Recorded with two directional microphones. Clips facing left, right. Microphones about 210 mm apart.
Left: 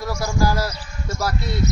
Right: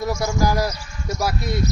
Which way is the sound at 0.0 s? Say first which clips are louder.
Right 1 dB; 20° right (ahead or behind).